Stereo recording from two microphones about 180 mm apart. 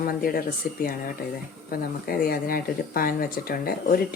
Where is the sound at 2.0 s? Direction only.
55° left (ahead or behind).